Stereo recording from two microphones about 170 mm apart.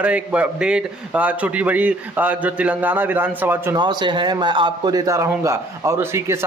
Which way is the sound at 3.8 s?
25° right (ahead or behind).